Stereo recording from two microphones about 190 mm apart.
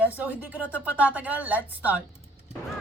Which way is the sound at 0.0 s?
10° right (ahead or behind).